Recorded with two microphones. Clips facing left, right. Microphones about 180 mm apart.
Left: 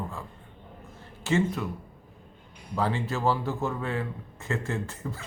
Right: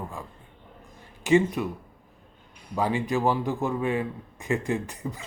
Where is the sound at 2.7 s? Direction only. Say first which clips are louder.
Right 3 dB; 15° right (ahead or behind).